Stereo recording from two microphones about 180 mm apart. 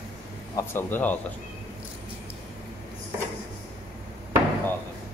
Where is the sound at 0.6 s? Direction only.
10° left (ahead or behind).